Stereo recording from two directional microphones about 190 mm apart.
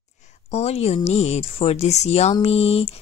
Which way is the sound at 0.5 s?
35° left (ahead or behind).